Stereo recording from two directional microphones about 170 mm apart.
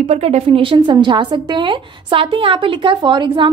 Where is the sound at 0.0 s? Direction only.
40° right (ahead or behind).